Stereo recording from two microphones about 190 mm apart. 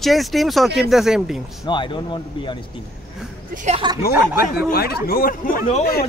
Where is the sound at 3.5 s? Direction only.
40° right (ahead or behind).